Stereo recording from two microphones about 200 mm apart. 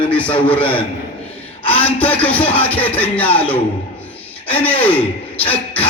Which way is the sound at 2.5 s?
10° left (ahead or behind).